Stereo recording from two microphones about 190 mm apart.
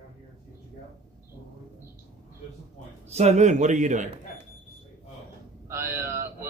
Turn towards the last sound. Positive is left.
turn(degrees=-15)  # may be behind; listen again after turning